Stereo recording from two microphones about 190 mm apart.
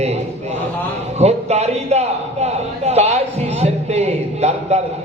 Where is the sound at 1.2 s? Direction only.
35° right (ahead or behind).